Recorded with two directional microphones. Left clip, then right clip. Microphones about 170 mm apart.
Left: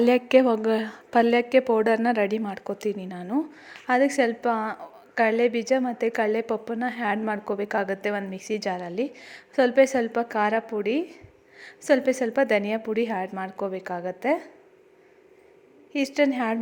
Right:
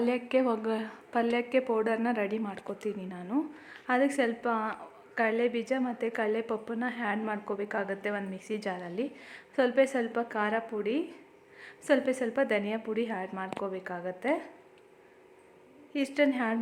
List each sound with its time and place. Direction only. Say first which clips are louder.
0.0 s a woman's voice: left 9 dB; 35° left (ahead or behind)
15.9 s a woman's voice: left 5 dB; 30° left (ahead or behind)